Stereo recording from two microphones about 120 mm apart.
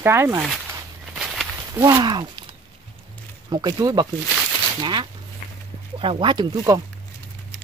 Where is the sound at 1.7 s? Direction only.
25° right (ahead or behind).